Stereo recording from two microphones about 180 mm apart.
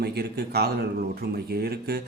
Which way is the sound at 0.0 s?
65° right (ahead or behind).